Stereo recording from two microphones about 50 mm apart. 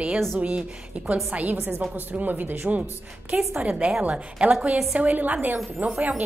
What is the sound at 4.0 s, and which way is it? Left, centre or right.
A woman's voice, right.